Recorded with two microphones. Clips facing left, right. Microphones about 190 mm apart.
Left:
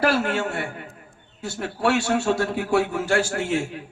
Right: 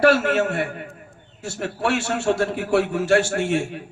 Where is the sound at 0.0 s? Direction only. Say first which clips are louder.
Right 5 dB; 70° right (ahead or behind).